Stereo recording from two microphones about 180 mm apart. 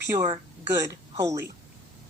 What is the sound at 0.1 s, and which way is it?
Speech, 15° right (ahead or behind).